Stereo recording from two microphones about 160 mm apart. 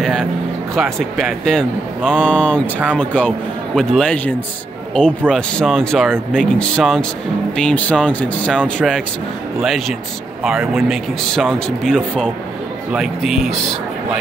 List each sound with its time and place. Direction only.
0.0 s vehicle: centre (ahead or behind)
0.7 s speech: 5° left (ahead or behind)